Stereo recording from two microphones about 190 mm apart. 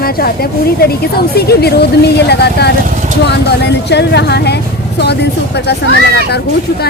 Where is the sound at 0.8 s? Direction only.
55° left (ahead or behind).